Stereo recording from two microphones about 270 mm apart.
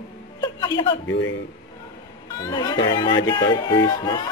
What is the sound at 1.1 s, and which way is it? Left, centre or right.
Speech, left.